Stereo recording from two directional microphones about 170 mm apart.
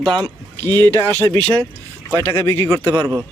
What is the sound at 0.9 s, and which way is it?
Speech, 15° left (ahead or behind).